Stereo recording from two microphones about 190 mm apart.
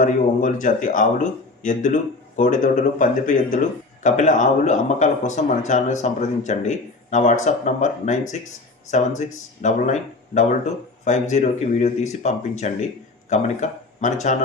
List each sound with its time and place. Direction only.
0.0 s speech: 45° left (ahead or behind)